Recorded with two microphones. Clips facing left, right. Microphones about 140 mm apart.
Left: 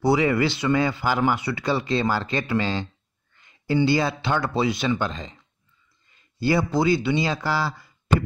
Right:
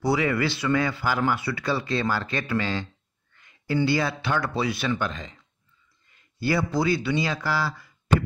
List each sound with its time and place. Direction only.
0.0 s speech: 25° left (ahead or behind)
6.4 s speech: 25° left (ahead or behind)